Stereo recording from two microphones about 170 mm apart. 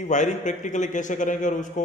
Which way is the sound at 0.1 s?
45° left (ahead or behind).